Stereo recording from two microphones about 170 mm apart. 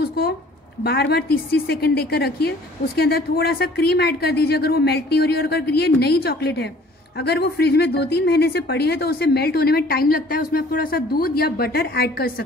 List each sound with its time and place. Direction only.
0.8 s speech: 70° left (ahead or behind)